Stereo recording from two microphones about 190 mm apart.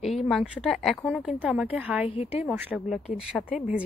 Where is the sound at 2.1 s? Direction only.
30° left (ahead or behind).